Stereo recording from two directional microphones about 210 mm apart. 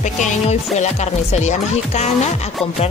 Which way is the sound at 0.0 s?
35° left (ahead or behind).